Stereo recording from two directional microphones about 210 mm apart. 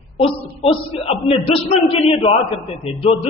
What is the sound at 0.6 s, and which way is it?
A man's voice, 30° left (ahead or behind).